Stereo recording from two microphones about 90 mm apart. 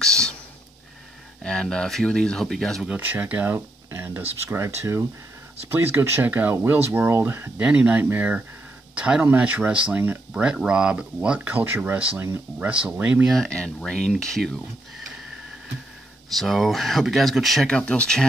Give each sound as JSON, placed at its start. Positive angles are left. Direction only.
{"t": 0.0, "sound": "a sound", "side_deg": 10}
{"t": 1.4, "sound": "speech", "side_deg": 10}
{"t": 2.9, "sound": "speech", "side_deg": -20}
{"t": 7.6, "sound": "speech", "side_deg": -15}
{"t": 13.3, "sound": "speech", "side_deg": 5}
{"t": 16.3, "sound": "speech", "side_deg": 0}
{"t": 17.6, "sound": "speech", "side_deg": 10}